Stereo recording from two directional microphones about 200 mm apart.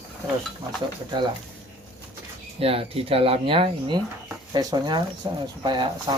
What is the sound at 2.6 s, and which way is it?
Speech, 30° right (ahead or behind).